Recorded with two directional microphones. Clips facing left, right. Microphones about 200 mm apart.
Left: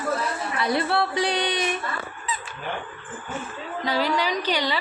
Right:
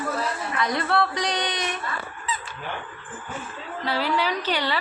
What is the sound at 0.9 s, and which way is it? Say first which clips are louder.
Speech: left 1 dB; 5° left (ahead or behind).